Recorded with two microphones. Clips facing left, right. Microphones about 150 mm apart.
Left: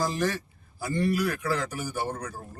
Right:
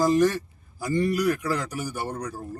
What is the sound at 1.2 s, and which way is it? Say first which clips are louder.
Speech: right 3 dB; 10° right (ahead or behind).